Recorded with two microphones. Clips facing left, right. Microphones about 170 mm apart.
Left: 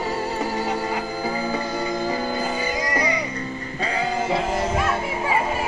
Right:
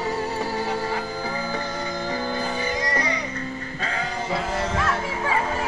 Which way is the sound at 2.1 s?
5° left (ahead or behind).